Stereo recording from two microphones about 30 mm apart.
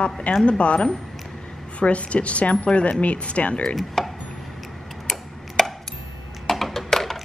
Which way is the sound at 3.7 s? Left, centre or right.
Centre.